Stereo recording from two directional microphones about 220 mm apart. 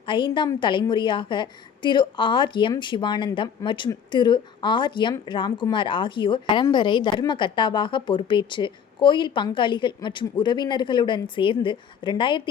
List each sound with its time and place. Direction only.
0.0 s a woman's voice: 20° left (ahead or behind)